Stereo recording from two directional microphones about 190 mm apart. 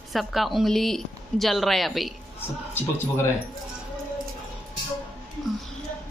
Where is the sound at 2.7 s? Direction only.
15° left (ahead or behind).